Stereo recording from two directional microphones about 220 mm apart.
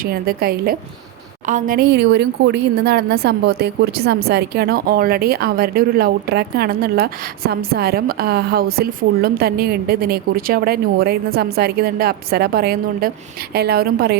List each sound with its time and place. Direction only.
0.0 s speech: 45° right (ahead or behind)